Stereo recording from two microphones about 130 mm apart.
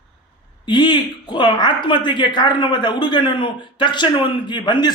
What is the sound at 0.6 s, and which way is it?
Speech, 35° left (ahead or behind).